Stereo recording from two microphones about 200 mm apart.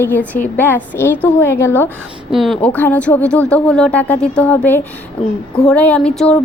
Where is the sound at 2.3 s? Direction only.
Centre (ahead or behind).